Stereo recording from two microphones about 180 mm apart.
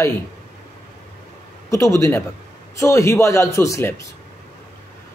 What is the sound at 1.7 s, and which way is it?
A man's voice, 15° left (ahead or behind).